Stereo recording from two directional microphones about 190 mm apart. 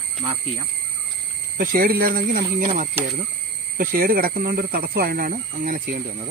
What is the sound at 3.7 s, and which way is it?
Speech, 50° right (ahead or behind).